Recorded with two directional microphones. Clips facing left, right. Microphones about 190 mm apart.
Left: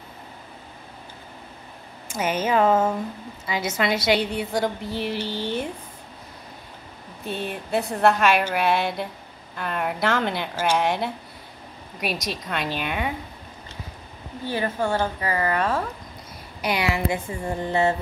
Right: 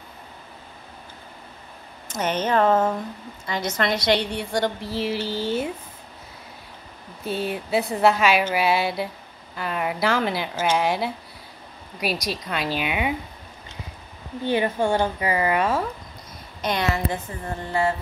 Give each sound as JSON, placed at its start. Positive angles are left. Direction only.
{"t": 2.0, "sound": "a woman's voice", "side_deg": 10}
{"t": 7.2, "sound": "speech", "side_deg": -5}
{"t": 14.4, "sound": "a woman's voice", "side_deg": -20}
{"t": 16.6, "sound": "a woman's voice", "side_deg": 10}